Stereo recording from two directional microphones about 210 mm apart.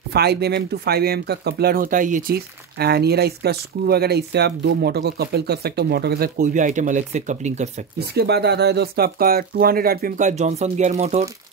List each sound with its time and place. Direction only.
0.1 s speech: 50° right (ahead or behind); by 7.7 s 35° right (ahead or behind)
8.0 s speech: 50° right (ahead or behind); by 11.2 s 30° right (ahead or behind)